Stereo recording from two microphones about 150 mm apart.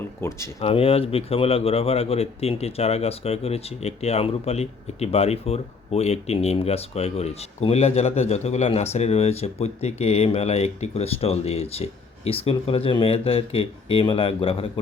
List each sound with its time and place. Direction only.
0.2 s speech: 20° left (ahead or behind)
0.6 s speech: 40° left (ahead or behind)